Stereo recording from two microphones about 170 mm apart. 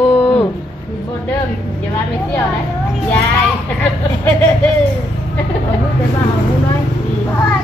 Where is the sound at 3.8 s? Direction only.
10° left (ahead or behind).